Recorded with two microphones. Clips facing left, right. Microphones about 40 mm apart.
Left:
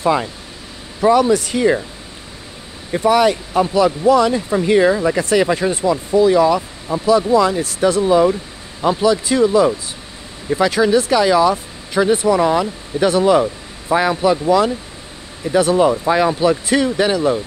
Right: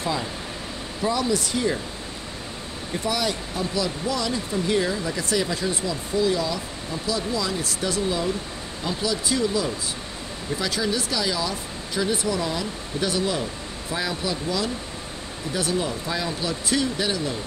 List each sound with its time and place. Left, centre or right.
1.0 s speech: left
3.0 s speech: left